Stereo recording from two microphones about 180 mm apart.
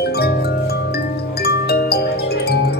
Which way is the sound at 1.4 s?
60° left (ahead or behind).